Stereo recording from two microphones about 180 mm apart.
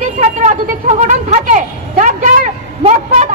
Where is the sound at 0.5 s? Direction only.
40° right (ahead or behind).